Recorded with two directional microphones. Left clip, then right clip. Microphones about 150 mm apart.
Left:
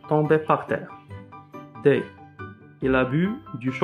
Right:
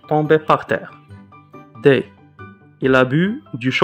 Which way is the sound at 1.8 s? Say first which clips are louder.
Right 6 dB; 40° right (ahead or behind).